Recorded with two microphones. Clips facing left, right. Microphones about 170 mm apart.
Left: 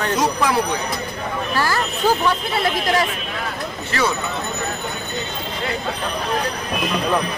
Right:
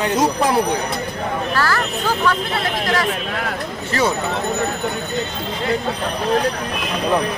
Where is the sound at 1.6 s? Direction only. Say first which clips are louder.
Left 2 dB; 15° left (ahead or behind).